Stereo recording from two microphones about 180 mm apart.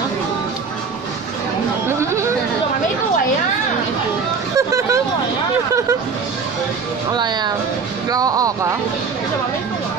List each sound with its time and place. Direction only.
4.6 s vehicle: 15° right (ahead or behind)
7.1 s music: 25° right (ahead or behind)
8.1 s speech: 20° right (ahead or behind)